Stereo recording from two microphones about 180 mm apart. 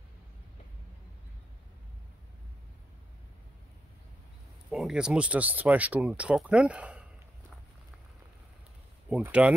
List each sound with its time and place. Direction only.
4.6 s speech: centre (ahead or behind)
9.1 s speech: 5° right (ahead or behind)